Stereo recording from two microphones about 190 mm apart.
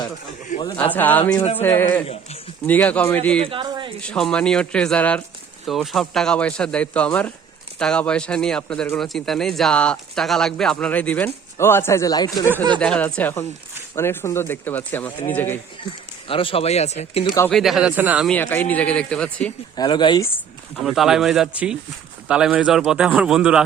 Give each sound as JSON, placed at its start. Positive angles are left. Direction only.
{"t": 0.5, "sound": "a man's voice", "side_deg": 40}
{"t": 0.9, "sound": "speech", "side_deg": 10}
{"t": 3.4, "sound": "a sound", "side_deg": -25}
{"t": 4.0, "sound": "speech", "side_deg": 5}
{"t": 16.3, "sound": "speech", "side_deg": 30}
{"t": 17.5, "sound": "speech", "side_deg": 0}
{"t": 18.3, "sound": "speech", "side_deg": 10}
{"t": 19.7, "sound": "speech", "side_deg": 20}
{"t": 20.8, "sound": "speech", "side_deg": 0}